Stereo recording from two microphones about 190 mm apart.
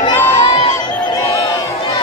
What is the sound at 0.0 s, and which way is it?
Crowd, 25° left (ahead or behind).